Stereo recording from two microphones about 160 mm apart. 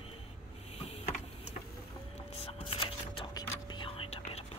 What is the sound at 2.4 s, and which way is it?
Whispering, 35° left (ahead or behind).